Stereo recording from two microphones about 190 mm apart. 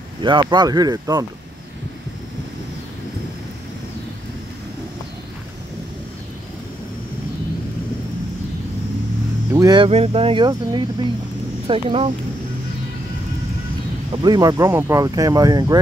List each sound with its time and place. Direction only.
0.2 s speech: 25° right (ahead or behind)
9.5 s vehicle: 20° right (ahead or behind)
9.8 s speech: 30° right (ahead or behind)
14.1 s speech: 20° right (ahead or behind)